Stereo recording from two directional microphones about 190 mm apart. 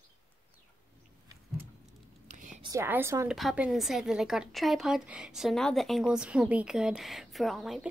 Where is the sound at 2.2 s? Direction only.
40° right (ahead or behind).